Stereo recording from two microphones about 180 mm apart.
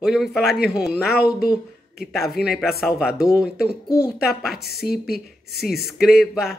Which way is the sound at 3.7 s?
60° left (ahead or behind).